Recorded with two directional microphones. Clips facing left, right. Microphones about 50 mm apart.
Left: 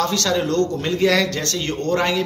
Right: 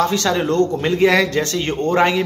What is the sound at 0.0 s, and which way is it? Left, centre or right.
A man's voice, right.